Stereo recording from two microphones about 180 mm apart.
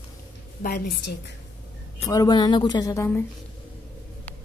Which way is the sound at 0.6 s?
55° left (ahead or behind).